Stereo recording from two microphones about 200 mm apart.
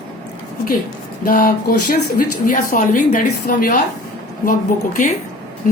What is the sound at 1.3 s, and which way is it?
A woman's voice, 40° left (ahead or behind).